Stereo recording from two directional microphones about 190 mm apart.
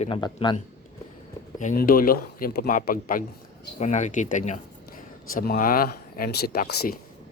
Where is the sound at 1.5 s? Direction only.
45° left (ahead or behind).